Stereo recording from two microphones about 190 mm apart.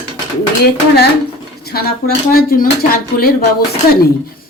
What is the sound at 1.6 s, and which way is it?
Speech, 55° left (ahead or behind).